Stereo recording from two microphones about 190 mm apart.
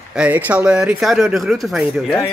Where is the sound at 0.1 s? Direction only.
5° right (ahead or behind).